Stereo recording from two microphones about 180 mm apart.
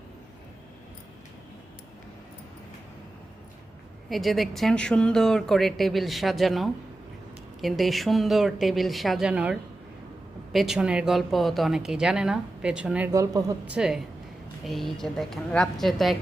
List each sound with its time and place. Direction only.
4.1 s speech: centre (ahead or behind)
13.1 s a woman's voice: 15° right (ahead or behind)
13.7 s speech: 5° right (ahead or behind)